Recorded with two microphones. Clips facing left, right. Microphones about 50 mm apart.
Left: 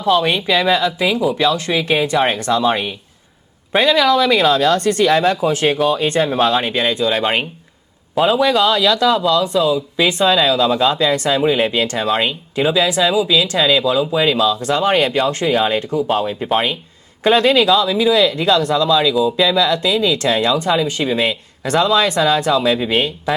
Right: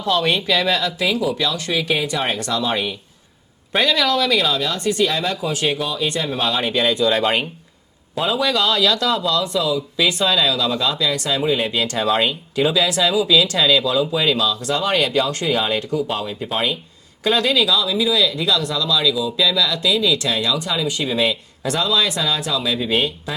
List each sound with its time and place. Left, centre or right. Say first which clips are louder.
0.0 s speech: left 4 dB; centre
4.4 s speech: left 7 dB; left; by 14.3 s centre
14.3 s speech: left 5 dB; left